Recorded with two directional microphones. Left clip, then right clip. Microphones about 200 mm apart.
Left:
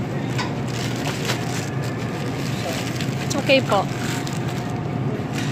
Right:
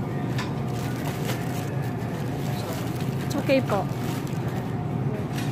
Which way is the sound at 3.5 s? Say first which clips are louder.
Left 6 dB; 15° right (ahead or behind).